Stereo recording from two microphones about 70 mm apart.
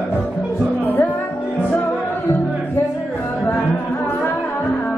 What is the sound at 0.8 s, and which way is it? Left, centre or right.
Music, left.